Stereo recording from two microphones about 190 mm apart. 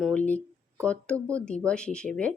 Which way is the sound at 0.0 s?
5° left (ahead or behind).